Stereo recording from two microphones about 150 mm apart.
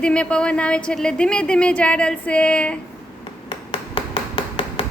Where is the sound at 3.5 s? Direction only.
35° left (ahead or behind).